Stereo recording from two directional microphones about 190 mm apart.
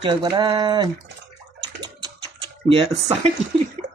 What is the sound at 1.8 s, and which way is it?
Typing, 20° right (ahead or behind).